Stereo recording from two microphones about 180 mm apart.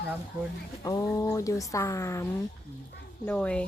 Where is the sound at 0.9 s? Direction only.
20° left (ahead or behind).